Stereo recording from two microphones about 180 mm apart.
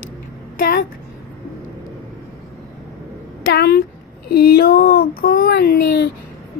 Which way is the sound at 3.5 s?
60° left (ahead or behind).